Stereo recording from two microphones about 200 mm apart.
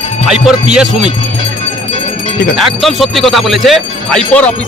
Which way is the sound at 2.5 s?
Centre (ahead or behind).